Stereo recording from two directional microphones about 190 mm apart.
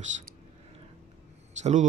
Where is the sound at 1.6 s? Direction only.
40° right (ahead or behind).